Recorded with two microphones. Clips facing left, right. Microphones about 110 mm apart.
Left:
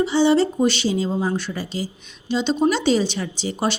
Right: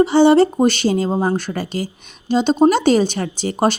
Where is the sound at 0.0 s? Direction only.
55° right (ahead or behind).